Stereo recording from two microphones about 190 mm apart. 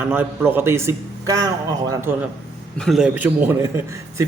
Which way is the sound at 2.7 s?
Centre (ahead or behind).